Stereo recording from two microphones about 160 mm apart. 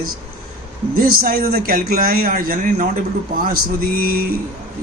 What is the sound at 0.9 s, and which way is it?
Speech, 65° right (ahead or behind).